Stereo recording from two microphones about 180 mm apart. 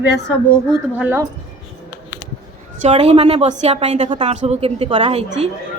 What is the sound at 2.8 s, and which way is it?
A woman's voice, 35° right (ahead or behind).